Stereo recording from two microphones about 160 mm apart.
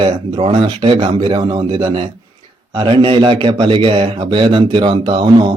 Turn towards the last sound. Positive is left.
turn(degrees=-30)  # may be behind; listen again after turning